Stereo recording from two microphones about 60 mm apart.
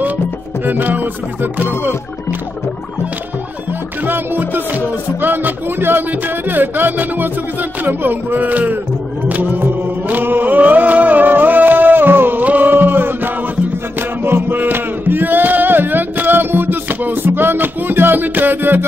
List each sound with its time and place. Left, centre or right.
0.7 s music: right
4.0 s music: right
14.2 s chant: right